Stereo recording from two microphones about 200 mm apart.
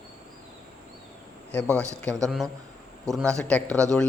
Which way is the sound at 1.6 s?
15° right (ahead or behind).